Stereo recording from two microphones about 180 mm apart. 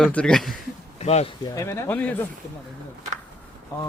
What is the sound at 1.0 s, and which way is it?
Speech, 35° left (ahead or behind).